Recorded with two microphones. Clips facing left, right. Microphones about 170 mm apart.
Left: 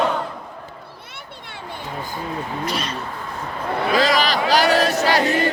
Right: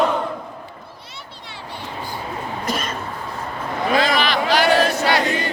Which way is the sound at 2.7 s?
45° right (ahead or behind).